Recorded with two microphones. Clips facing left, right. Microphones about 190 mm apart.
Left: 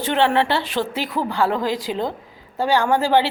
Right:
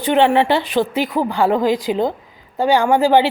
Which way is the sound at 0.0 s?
15° right (ahead or behind).